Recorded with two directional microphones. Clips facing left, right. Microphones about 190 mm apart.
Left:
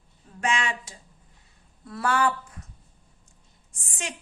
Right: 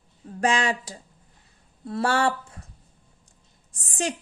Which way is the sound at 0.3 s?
35° right (ahead or behind).